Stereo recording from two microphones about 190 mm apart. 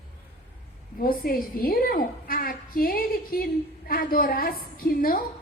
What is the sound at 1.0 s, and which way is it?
A woman's voice, 50° left (ahead or behind).